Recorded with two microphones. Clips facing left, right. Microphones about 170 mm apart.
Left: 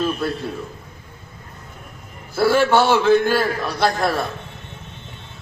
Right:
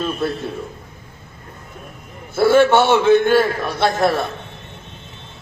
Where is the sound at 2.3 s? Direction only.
20° right (ahead or behind).